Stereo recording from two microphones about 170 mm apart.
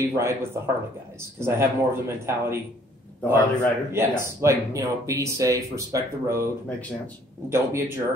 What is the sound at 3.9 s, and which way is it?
Speech, 15° right (ahead or behind).